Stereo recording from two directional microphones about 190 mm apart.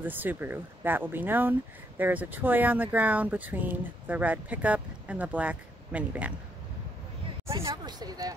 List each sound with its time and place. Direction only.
0.0 s speech: 10° right (ahead or behind)
7.6 s speech: 20° right (ahead or behind)